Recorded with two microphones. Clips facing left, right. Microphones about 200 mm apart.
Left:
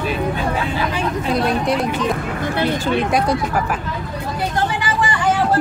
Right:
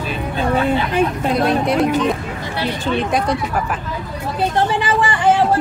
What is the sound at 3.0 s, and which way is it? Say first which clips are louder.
Speech: right 1 dB; centre (ahead or behind).